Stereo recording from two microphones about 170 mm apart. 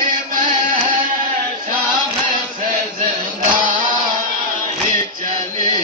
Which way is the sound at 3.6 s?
50° right (ahead or behind).